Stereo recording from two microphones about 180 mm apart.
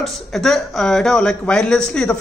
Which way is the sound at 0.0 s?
Centre (ahead or behind).